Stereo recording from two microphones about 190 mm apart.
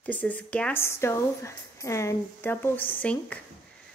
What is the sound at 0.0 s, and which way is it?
A woman's voice, 10° left (ahead or behind).